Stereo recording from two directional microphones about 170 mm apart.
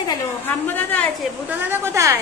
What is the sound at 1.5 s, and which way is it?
Speech, 10° right (ahead or behind).